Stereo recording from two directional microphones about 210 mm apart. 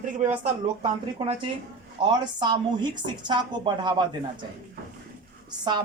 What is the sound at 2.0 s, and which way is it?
Speech, 20° right (ahead or behind).